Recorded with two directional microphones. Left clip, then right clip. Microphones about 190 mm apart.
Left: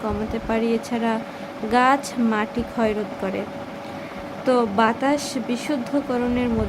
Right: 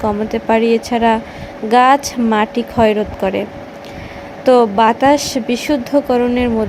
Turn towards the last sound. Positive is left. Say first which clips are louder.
# right 9 dB
turn(degrees=-25)  # may be behind; listen again after turning